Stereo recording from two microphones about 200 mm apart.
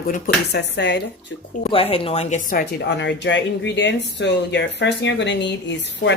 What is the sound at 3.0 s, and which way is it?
Speech, 60° left (ahead or behind).